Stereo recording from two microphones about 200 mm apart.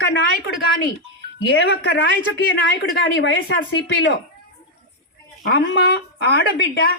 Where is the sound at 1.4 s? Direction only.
55° left (ahead or behind).